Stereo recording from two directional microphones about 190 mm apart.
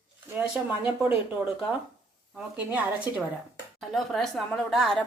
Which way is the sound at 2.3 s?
10° right (ahead or behind).